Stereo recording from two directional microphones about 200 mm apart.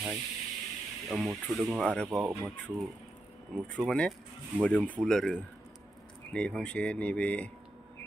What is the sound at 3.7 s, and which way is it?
Speech, centre (ahead or behind).